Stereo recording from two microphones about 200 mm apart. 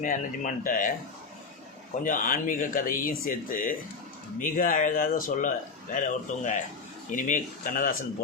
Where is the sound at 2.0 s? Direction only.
45° left (ahead or behind).